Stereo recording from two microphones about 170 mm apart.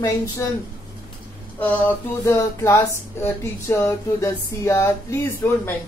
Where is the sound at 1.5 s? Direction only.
10° left (ahead or behind).